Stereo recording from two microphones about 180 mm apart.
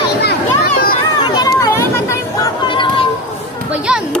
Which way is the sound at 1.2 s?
20° left (ahead or behind).